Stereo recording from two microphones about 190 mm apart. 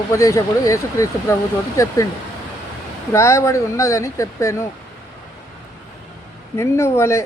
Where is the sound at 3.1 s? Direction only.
15° left (ahead or behind).